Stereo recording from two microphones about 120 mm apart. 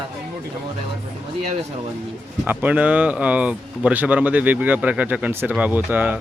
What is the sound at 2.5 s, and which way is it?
Speech, 15° right (ahead or behind).